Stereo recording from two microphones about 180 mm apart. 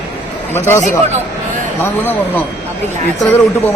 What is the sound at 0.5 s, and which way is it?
Speech, 15° left (ahead or behind).